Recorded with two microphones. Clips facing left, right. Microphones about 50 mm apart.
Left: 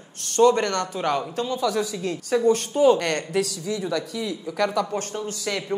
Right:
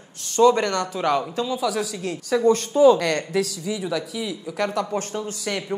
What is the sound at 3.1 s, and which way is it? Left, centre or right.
Speech, centre.